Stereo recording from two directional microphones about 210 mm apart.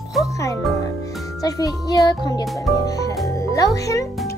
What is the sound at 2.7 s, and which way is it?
Music, 15° left (ahead or behind).